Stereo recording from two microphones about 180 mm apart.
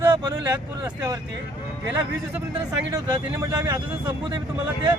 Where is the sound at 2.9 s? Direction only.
20° right (ahead or behind).